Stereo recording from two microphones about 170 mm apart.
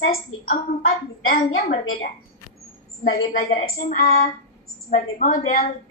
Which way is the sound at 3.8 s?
60° left (ahead or behind).